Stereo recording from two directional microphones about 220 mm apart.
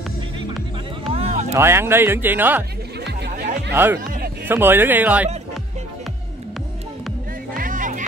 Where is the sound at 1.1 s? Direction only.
30° right (ahead or behind).